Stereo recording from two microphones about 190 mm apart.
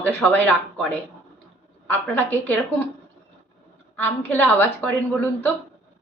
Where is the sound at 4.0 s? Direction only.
10° left (ahead or behind).